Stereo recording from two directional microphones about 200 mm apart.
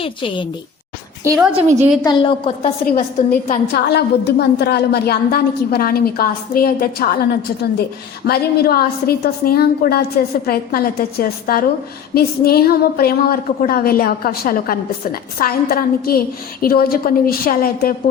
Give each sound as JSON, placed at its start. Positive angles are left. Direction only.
{"t": 0.0, "sound": "a woman's voice", "side_deg": 25}
{"t": 1.2, "sound": "a woman's voice", "side_deg": -15}
{"t": 2.0, "sound": "a woman's voice", "side_deg": 25}
{"t": 2.8, "sound": "a woman's voice", "side_deg": 45}